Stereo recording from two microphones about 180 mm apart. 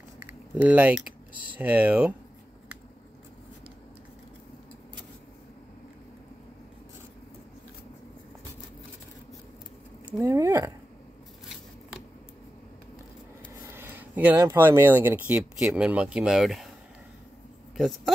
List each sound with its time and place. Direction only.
0.2 s typing: 10° right (ahead or behind)
1.5 s speech: 10° right (ahead or behind)
10.0 s speech: 15° right (ahead or behind)
13.7 s speech: 10° right (ahead or behind)
17.7 s speech: centre (ahead or behind)